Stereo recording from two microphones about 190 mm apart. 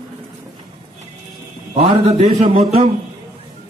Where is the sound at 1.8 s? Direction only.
35° right (ahead or behind).